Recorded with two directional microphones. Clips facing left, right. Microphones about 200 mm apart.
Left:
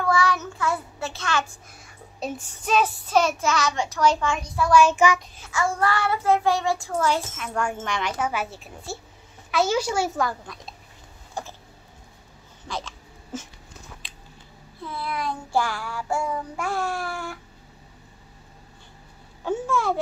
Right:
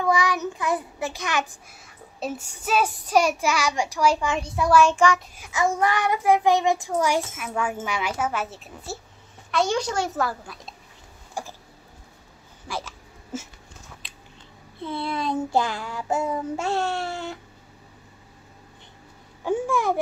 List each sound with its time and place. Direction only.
0.0 s a child's voice: 15° right (ahead or behind)
2.1 s child singing: 5° right (ahead or behind)
4.4 s child singing: 25° right (ahead or behind)
4.6 s speech: centre (ahead or behind)
5.4 s child singing: 20° right (ahead or behind)
7.8 s speech: 5° right (ahead or behind)
10.1 s speech: 5° right (ahead or behind)
11.4 s child singing: 10° right (ahead or behind)
12.6 s hiccup: 10° right (ahead or behind)
14.0 s a sound: centre (ahead or behind)
14.8 s child singing: 25° right (ahead or behind)
19.4 s child singing: 15° right (ahead or behind)